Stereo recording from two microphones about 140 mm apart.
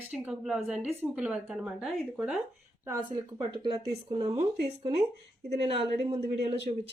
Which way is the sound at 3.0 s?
30° right (ahead or behind).